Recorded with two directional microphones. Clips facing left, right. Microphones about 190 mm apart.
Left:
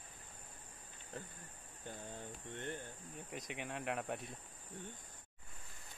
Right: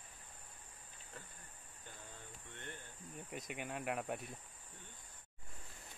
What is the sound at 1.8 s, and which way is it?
Cricket, 50° left (ahead or behind).